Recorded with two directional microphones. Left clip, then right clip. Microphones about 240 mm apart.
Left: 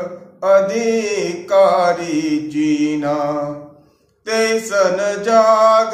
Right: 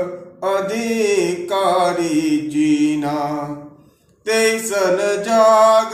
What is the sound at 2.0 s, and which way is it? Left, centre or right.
Mantra, right.